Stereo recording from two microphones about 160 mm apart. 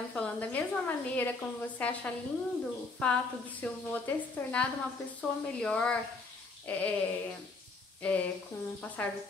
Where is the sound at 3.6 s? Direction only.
10° left (ahead or behind).